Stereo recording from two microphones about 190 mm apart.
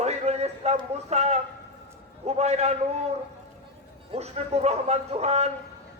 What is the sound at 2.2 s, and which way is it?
Speech, 35° right (ahead or behind).